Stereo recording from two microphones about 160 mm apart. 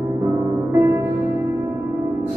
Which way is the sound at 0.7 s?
15° right (ahead or behind).